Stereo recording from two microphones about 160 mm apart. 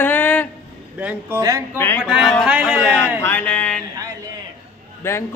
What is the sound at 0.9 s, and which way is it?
Speech, 10° right (ahead or behind).